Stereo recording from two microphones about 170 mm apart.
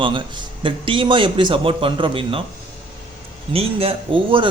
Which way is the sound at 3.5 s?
35° right (ahead or behind).